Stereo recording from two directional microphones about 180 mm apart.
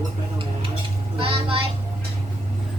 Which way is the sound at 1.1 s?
30° right (ahead or behind).